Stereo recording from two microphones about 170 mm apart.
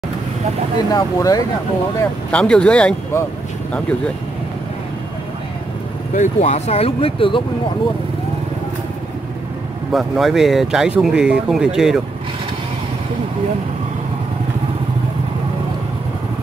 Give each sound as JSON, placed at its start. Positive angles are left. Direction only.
{"t": 0.9, "sound": "speech", "side_deg": 20}
{"t": 2.3, "sound": "speech", "side_deg": 5}
{"t": 6.1, "sound": "speech", "side_deg": 45}
{"t": 9.9, "sound": "speech", "side_deg": 0}